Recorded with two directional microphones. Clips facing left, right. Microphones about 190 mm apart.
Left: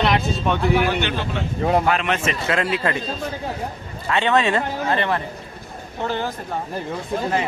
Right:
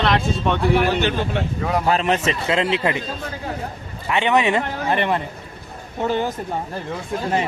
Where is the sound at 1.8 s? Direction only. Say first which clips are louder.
Right 2 dB; 35° right (ahead or behind).